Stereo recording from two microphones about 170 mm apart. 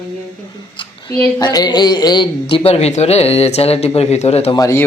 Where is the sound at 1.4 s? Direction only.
25° left (ahead or behind).